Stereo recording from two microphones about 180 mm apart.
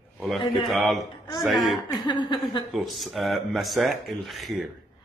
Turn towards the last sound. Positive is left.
turn(degrees=0)  # may be behind; listen again after turning